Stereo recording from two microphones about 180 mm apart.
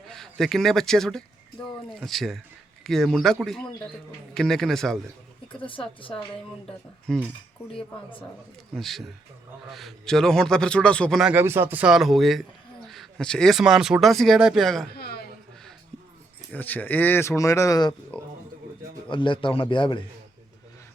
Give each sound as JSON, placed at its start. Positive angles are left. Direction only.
{"t": 0.1, "sound": "a man's voice", "side_deg": 0}
{"t": 5.6, "sound": "a man's voice", "side_deg": 30}
{"t": 7.1, "sound": "a man's voice", "side_deg": 0}
{"t": 14.9, "sound": "a sound", "side_deg": 60}
{"t": 16.5, "sound": "a man's voice", "side_deg": 10}